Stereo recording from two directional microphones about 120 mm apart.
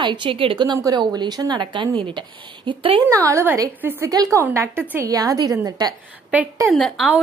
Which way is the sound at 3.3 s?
20° right (ahead or behind).